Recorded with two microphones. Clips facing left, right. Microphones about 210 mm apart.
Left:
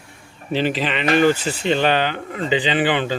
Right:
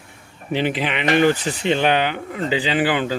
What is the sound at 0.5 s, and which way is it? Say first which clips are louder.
Speech: left 1 dB; 15° right (ahead or behind).